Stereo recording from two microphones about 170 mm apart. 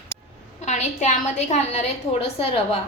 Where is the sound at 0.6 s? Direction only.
40° left (ahead or behind).